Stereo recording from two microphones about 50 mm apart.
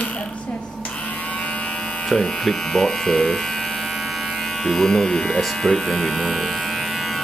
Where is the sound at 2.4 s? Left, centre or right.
Centre.